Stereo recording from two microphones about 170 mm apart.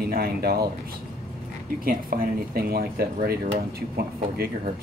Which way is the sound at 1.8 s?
60° right (ahead or behind).